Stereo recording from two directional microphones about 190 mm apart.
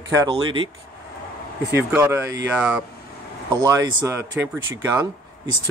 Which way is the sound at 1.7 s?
15° right (ahead or behind).